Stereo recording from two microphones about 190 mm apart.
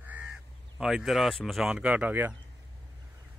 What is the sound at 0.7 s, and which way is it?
A man's voice, centre (ahead or behind).